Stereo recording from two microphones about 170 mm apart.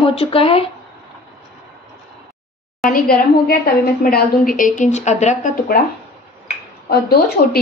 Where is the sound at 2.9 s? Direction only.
55° left (ahead or behind).